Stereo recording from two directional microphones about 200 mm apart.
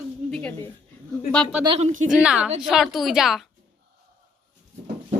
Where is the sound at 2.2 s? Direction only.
5° right (ahead or behind).